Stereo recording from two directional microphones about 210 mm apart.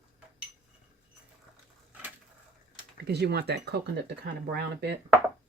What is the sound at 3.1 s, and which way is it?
Speech, 50° right (ahead or behind).